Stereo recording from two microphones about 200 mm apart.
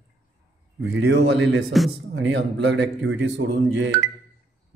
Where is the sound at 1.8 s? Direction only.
Centre (ahead or behind).